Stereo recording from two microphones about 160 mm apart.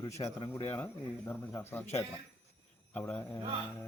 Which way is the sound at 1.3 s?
15° left (ahead or behind).